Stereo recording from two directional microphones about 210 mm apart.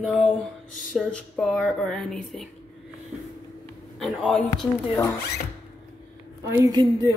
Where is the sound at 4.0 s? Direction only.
Centre (ahead or behind).